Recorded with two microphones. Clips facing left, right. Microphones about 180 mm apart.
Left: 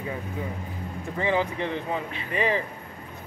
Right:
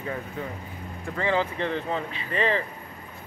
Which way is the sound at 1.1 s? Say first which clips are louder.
Even; 15° left (ahead or behind).